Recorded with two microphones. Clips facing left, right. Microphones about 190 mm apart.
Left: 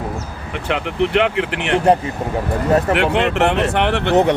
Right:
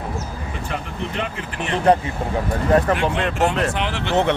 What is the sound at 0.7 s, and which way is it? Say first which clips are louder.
Speech: left 13 dB; 75° left (ahead or behind).